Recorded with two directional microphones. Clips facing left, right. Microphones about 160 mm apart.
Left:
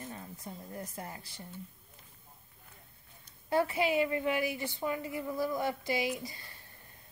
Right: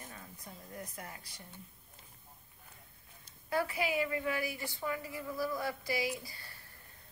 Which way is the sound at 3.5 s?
25° left (ahead or behind).